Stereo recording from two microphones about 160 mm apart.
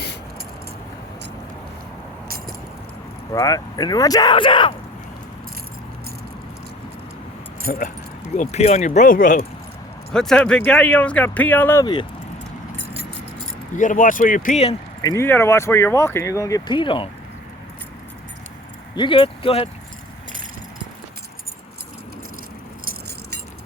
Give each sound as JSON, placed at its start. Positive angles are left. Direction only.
{"t": 3.3, "sound": "speech", "side_deg": 20}
{"t": 7.7, "sound": "speech", "side_deg": 60}
{"t": 8.4, "sound": "speech", "side_deg": 45}
{"t": 10.1, "sound": "speech", "side_deg": 5}
{"t": 13.7, "sound": "speech", "side_deg": 55}
{"t": 15.0, "sound": "speech", "side_deg": 15}
{"t": 18.9, "sound": "speech", "side_deg": 30}